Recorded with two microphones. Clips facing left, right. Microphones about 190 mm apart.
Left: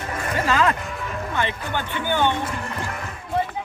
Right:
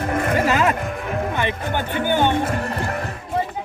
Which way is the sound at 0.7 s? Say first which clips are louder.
Right 5 dB; 55° right (ahead or behind).